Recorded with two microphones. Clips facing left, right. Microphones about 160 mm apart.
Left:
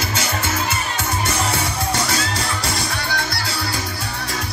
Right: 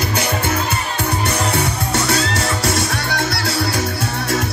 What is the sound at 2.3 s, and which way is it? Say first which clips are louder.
Music: right 5 dB; 80° right.